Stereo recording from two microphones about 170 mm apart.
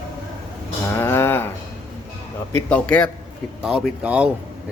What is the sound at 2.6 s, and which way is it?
Speech, 5° left (ahead or behind).